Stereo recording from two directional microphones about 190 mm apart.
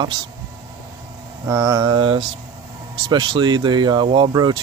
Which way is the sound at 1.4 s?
20° right (ahead or behind).